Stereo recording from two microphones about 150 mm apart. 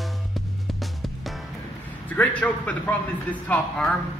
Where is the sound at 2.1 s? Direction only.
10° left (ahead or behind).